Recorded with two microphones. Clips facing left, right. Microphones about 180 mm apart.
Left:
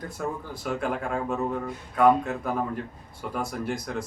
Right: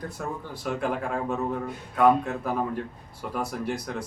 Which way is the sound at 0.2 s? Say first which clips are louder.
Left 2 dB; centre (ahead or behind).